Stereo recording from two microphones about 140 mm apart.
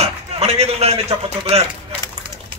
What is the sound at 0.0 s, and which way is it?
A man's voice, 50° right (ahead or behind).